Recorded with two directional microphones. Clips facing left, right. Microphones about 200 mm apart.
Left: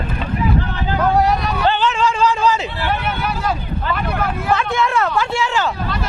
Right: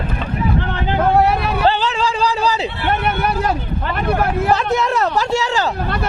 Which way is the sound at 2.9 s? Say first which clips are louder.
Right 5 dB; 55° right (ahead or behind).